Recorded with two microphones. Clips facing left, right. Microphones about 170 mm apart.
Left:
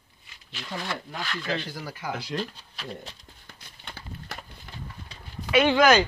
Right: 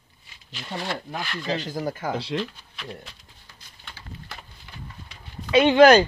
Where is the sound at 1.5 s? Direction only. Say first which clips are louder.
Right 8 dB; 45° right (ahead or behind).